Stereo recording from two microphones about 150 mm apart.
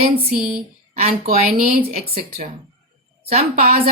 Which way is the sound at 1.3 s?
75° right (ahead or behind).